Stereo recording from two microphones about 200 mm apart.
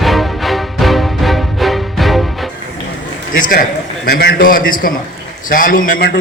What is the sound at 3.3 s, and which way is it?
A man's voice, 45° left (ahead or behind).